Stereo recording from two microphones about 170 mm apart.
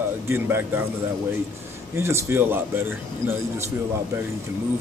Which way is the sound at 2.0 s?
15° right (ahead or behind).